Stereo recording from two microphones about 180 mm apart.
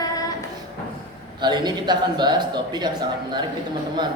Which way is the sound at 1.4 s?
25° right (ahead or behind).